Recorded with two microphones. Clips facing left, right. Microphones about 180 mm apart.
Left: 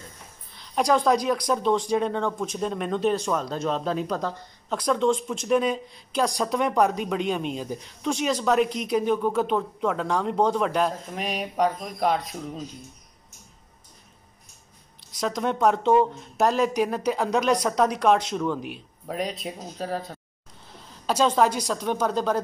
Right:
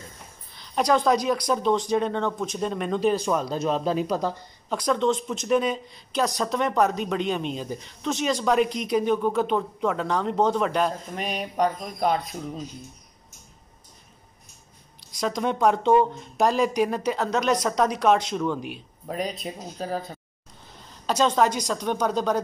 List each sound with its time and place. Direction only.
0.6 s a sound: 5° left (ahead or behind)
1.0 s speech: 5° right (ahead or behind)
4.7 s speech: 5° left (ahead or behind)
15.1 s a woman's voice: 5° left (ahead or behind)